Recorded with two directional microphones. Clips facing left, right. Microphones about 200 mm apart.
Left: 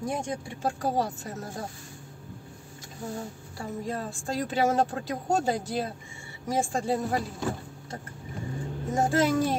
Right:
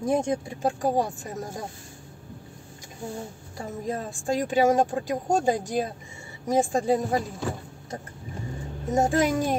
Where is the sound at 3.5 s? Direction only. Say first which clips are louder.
Right 2 dB; 20° right (ahead or behind).